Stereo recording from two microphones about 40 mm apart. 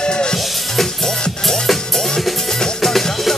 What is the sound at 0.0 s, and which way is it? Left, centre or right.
Music, left.